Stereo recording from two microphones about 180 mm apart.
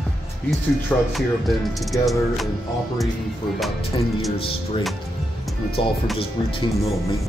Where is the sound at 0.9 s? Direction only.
5° left (ahead or behind).